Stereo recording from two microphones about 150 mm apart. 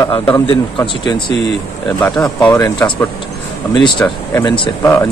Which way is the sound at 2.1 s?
10° left (ahead or behind).